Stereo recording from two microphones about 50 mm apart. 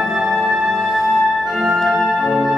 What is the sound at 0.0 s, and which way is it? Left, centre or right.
Music, centre.